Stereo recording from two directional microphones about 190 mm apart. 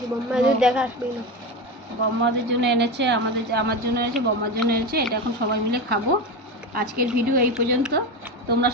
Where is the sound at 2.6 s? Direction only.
65° right (ahead or behind).